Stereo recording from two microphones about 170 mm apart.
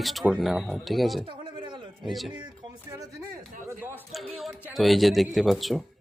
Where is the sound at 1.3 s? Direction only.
30° right (ahead or behind).